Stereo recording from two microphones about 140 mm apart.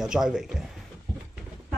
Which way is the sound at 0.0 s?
5° right (ahead or behind).